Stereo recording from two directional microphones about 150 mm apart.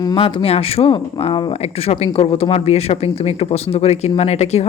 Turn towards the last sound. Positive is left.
turn(degrees=45)  # may be behind; listen again after turning